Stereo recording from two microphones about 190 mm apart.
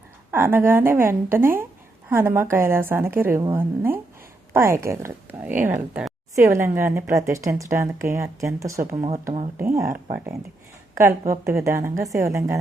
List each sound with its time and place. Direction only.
0.3 s speech: 10° right (ahead or behind)
9.0 s speech: 30° right (ahead or behind)
9.6 s speech: 15° right (ahead or behind)
11.4 s speech: 15° right (ahead or behind)